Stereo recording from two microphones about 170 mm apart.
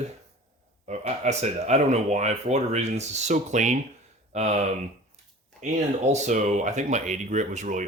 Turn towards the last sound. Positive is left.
turn(degrees=-45)  # may be behind; listen again after turning